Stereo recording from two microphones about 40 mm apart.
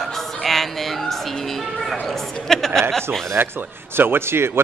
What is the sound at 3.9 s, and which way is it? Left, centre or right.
Speech, right.